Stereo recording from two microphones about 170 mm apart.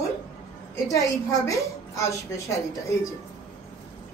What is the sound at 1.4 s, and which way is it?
A woman's voice, 20° left (ahead or behind).